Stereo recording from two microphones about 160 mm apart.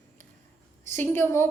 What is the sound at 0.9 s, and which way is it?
Speech, 15° left (ahead or behind).